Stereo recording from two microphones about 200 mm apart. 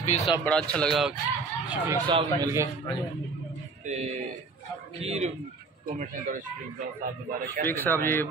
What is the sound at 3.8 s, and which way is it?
A man's voice, 35° right (ahead or behind).